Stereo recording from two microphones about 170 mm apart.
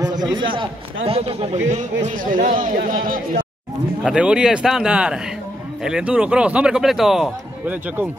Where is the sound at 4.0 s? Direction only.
5° right (ahead or behind).